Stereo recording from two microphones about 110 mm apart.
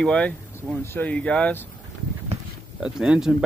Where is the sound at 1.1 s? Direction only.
10° left (ahead or behind).